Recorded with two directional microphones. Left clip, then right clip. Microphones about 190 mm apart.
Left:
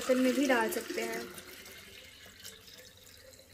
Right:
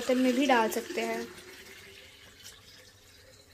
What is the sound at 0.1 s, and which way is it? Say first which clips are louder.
Speech: right 3 dB; 20° right (ahead or behind).